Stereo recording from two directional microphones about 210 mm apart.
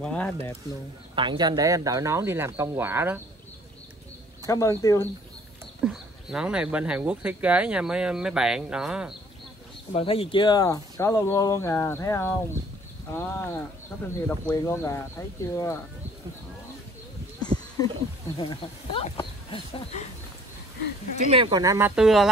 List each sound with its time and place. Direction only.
0.0 s speech: 5° left (ahead or behind)
1.1 s speech: 20° right (ahead or behind)
4.5 s speech: 15° left (ahead or behind)
5.9 s speech: 5° right (ahead or behind)
9.9 s speech: 25° left (ahead or behind)
17.5 s a sound: 35° right (ahead or behind)
18.4 s speech: 25° left (ahead or behind)
21.3 s speech: 25° right (ahead or behind); by 22.3 s centre (ahead or behind)